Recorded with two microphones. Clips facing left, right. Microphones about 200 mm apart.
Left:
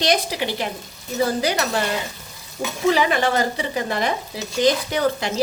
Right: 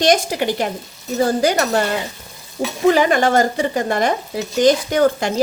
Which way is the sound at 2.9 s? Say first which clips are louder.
Right 5 dB; 50° right (ahead or behind).